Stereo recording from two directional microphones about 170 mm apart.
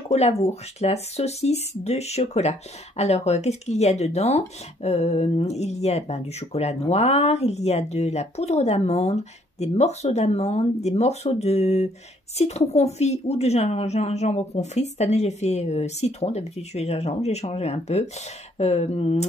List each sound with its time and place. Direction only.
0.1 s speech: 40° left (ahead or behind)